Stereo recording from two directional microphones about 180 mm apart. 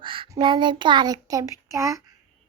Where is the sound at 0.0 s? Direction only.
25° right (ahead or behind).